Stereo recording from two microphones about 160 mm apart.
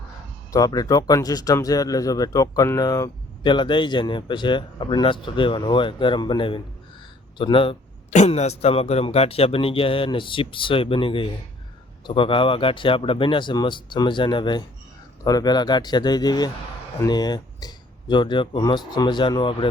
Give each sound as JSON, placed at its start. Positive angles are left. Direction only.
{"t": 0.5, "sound": "speech", "side_deg": 25}
{"t": 8.1, "sound": "speech", "side_deg": 45}